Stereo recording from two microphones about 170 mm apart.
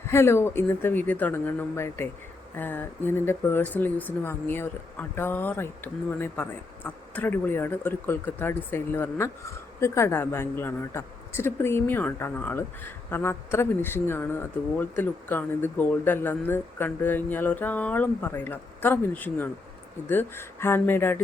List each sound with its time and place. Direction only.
0.1 s speech: 15° left (ahead or behind)